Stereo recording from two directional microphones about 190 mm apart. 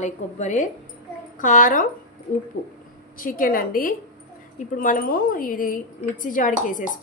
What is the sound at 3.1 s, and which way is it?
A woman's voice, 45° left (ahead or behind).